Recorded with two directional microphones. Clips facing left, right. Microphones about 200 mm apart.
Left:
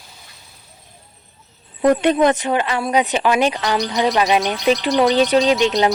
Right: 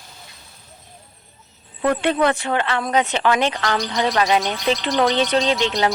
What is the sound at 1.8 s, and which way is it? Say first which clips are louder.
Speech: left 4 dB; 15° left (ahead or behind).